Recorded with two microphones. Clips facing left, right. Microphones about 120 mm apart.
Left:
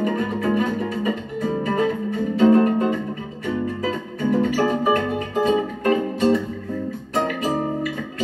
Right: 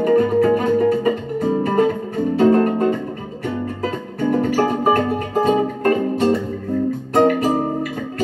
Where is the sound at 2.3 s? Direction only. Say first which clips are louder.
Right 1 dB; 45° right (ahead or behind).